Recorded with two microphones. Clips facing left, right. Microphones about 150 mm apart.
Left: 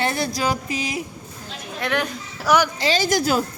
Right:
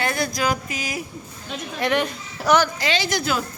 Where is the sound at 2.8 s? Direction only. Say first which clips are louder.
Left 3 dB; 40° left (ahead or behind).